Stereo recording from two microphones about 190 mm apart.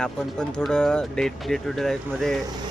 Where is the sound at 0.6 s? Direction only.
5° left (ahead or behind).